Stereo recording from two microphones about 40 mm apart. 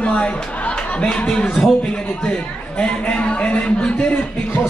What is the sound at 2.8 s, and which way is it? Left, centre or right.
A man's voice, left.